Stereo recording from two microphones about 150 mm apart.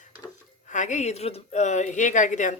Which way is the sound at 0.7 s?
55° left (ahead or behind).